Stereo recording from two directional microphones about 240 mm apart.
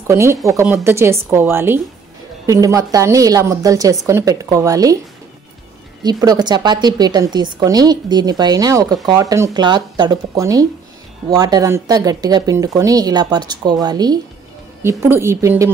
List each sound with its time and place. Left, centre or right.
0.1 s a woman's voice: centre
6.2 s a woman's voice: centre